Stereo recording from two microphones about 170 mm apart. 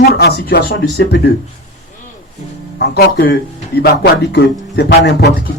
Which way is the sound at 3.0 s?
75° left (ahead or behind).